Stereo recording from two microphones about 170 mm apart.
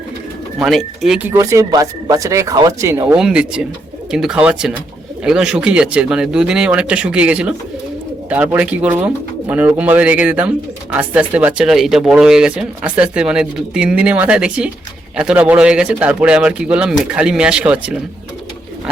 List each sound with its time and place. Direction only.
0.6 s speech: centre (ahead or behind); by 3.2 s 15° right (ahead or behind)
3.2 s speech: 5° right (ahead or behind)